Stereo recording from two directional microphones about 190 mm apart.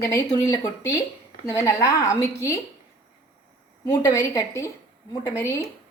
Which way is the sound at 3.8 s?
15° left (ahead or behind).